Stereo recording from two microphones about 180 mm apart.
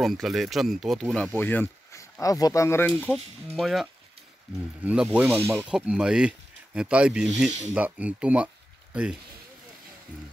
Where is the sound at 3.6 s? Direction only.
Centre (ahead or behind).